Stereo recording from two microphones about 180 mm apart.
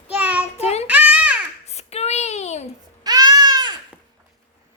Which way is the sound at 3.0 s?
20° right (ahead or behind).